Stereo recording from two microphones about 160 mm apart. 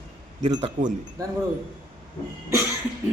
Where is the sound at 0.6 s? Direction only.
55° right (ahead or behind).